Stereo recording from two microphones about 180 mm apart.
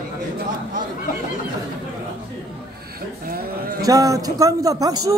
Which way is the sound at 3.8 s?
20° right (ahead or behind).